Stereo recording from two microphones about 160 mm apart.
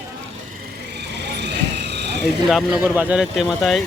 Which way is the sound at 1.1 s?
90° right.